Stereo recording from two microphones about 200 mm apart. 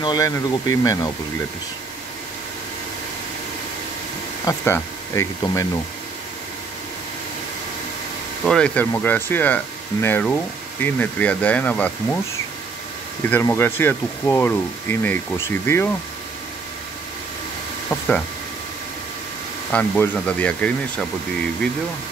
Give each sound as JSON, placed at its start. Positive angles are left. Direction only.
{"t": 0.0, "sound": "speech", "side_deg": 20}
{"t": 4.5, "sound": "speech", "side_deg": 15}
{"t": 8.5, "sound": "speech", "side_deg": 5}
{"t": 13.3, "sound": "speech", "side_deg": 10}
{"t": 17.8, "sound": "a sound", "side_deg": 5}
{"t": 19.7, "sound": "speech", "side_deg": 5}